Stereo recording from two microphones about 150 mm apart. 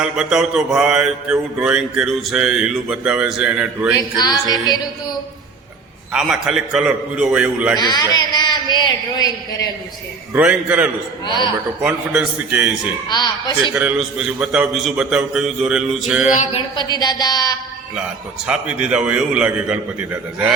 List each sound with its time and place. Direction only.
0.0 s mantra: 5° right (ahead or behind)
4.2 s a man's voice: 25° left (ahead or behind)
6.1 s mantra: 5° right (ahead or behind)
7.8 s a man's voice: 25° left (ahead or behind)
10.3 s a man's voice: 10° right (ahead or behind)
11.3 s a man's voice: 30° left (ahead or behind)
11.8 s a man's voice: 5° right (ahead or behind)
13.1 s a man's voice: 30° left (ahead or behind)
13.7 s mantra: 5° right (ahead or behind)
16.5 s a man's voice: 35° left (ahead or behind)
18.4 s a man's voice: 10° right (ahead or behind)